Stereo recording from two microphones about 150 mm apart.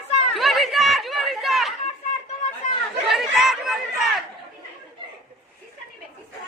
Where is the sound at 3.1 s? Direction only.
Centre (ahead or behind).